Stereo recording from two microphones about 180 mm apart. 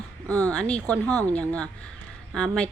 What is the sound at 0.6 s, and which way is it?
Speech, 5° left (ahead or behind).